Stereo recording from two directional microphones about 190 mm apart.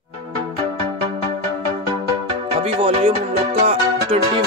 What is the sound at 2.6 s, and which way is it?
Speech, 30° right (ahead or behind).